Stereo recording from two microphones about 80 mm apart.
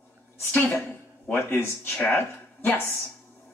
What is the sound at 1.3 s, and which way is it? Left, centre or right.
Speech, left.